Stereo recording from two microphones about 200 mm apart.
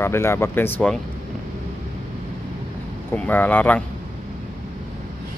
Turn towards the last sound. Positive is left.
turn(degrees=10)  # may be behind; listen again after turning